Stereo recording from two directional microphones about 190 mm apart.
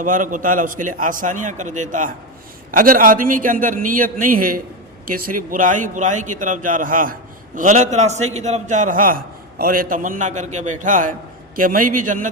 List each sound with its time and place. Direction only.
0.0 s a man's voice: 45° right (ahead or behind)